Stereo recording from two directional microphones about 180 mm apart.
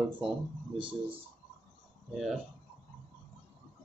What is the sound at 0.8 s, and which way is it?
Speech, 30° right (ahead or behind).